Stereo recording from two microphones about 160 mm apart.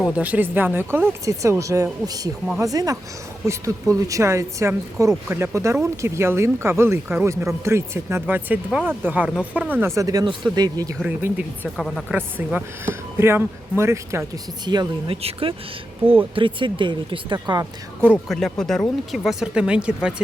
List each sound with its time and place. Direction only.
0.2 s speech: 10° right (ahead or behind)
11.0 s speech: 10° right (ahead or behind)
11.8 s speech: 5° left (ahead or behind)
12.1 s speech: 10° right (ahead or behind); by 17.7 s 25° right (ahead or behind)
18.0 s speech: 10° right (ahead or behind)
18.3 s speech: centre (ahead or behind)